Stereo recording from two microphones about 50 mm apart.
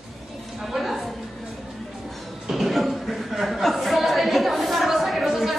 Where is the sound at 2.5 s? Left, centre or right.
Centre.